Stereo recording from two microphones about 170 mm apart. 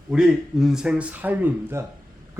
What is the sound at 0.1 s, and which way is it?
Speech, 5° right (ahead or behind).